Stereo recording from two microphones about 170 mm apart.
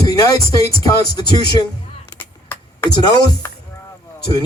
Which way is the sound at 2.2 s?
10° left (ahead or behind).